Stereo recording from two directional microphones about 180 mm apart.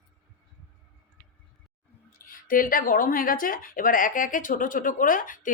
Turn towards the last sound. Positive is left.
turn(degrees=50)  # may be behind; listen again after turning